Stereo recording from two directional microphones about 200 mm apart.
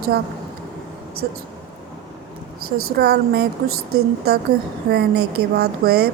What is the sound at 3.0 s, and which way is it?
A woman's voice, 50° right (ahead or behind).